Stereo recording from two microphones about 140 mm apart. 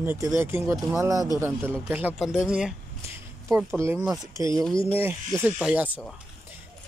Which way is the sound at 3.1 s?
20° right (ahead or behind).